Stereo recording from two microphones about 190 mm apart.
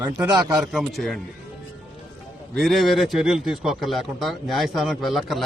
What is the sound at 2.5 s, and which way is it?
A man's voice, centre (ahead or behind).